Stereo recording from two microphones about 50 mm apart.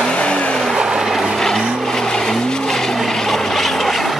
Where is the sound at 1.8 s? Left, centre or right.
Centre.